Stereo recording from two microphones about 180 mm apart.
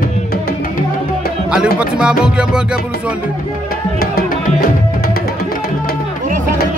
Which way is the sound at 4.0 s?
60° left (ahead or behind).